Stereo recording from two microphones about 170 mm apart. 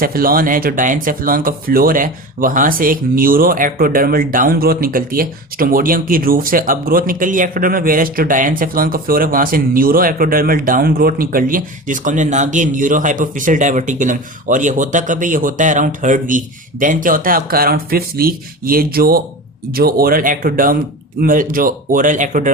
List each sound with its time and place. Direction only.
0.0 s speech: 60° right (ahead or behind)